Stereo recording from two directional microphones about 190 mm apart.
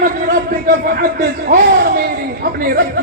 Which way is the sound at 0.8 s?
55° right (ahead or behind).